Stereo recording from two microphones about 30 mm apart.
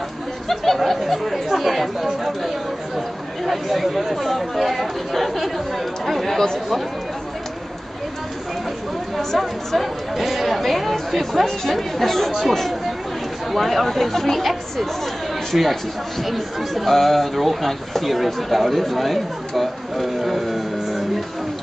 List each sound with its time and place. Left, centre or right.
0.5 s speech: centre
3.4 s speech: centre
9.8 s speech: centre
12.3 s speech: centre
15.5 s speech: centre
16.3 s speech: centre